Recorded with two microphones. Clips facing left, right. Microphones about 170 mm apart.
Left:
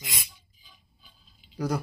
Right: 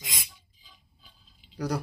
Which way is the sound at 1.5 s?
5° left (ahead or behind).